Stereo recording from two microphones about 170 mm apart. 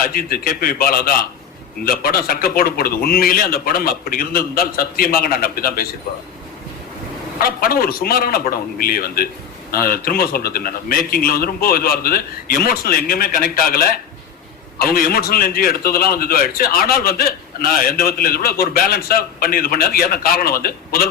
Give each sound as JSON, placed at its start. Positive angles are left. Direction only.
{"t": 0.1, "sound": "a man's voice", "side_deg": 60}
{"t": 7.3, "sound": "a man's voice", "side_deg": 60}